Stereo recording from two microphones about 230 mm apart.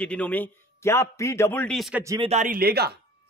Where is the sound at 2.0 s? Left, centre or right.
Centre.